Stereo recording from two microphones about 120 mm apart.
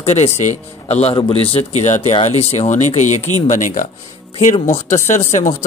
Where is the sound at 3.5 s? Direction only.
90° left.